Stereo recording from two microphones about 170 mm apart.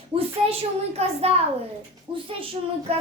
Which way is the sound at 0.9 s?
35° right (ahead or behind).